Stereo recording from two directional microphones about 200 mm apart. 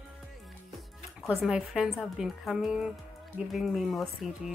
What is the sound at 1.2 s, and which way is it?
Speech, centre (ahead or behind).